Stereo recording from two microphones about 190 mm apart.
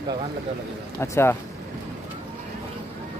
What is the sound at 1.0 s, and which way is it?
Speech, 15° left (ahead or behind).